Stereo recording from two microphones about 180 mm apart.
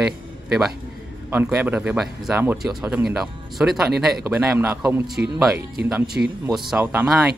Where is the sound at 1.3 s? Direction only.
10° right (ahead or behind).